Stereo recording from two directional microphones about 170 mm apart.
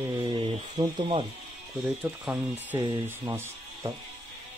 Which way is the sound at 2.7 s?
15° right (ahead or behind).